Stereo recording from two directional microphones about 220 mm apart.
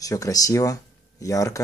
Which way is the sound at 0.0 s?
15° left (ahead or behind).